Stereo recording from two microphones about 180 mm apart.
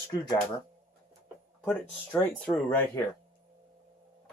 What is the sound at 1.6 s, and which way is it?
Speech, 5° left (ahead or behind).